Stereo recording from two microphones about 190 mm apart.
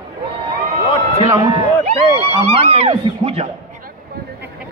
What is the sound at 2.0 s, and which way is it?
Speech, 30° right (ahead or behind).